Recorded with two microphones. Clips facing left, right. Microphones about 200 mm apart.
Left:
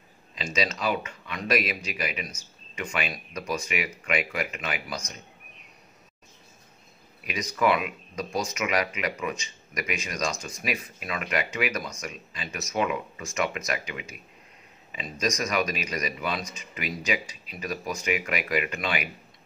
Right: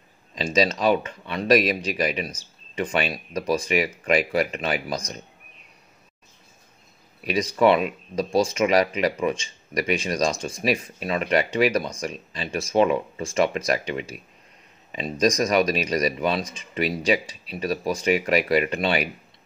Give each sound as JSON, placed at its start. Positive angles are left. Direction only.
{"t": 0.3, "sound": "speech", "side_deg": -35}
{"t": 7.2, "sound": "speech", "side_deg": -30}